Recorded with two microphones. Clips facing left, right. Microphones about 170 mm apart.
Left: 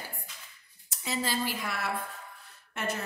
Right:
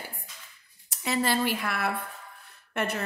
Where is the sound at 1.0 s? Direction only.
65° right (ahead or behind).